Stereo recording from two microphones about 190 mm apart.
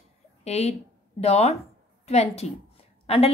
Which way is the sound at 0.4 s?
35° left (ahead or behind).